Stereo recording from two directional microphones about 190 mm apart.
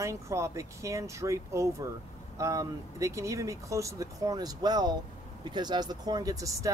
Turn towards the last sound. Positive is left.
turn(degrees=-15)  # may be behind; listen again after turning